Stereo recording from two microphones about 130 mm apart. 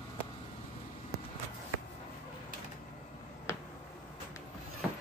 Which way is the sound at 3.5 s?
20° left (ahead or behind).